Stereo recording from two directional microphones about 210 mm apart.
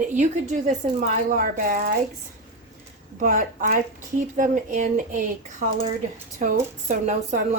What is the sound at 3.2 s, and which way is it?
A woman's voice, 40° right (ahead or behind).